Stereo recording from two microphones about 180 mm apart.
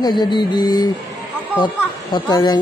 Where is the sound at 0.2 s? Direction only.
25° left (ahead or behind).